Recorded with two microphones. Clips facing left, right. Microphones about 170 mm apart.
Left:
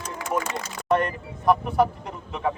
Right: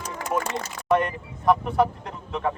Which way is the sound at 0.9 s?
Centre (ahead or behind).